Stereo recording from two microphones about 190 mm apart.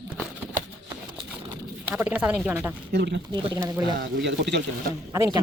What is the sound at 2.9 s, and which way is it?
Speech, 60° right (ahead or behind).